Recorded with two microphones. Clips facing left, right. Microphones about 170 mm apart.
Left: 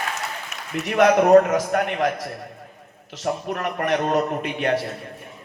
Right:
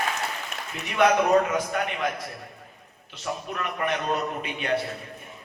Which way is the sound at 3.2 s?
55° left (ahead or behind).